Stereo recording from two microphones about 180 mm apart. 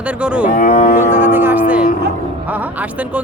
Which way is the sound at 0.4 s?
50° left (ahead or behind).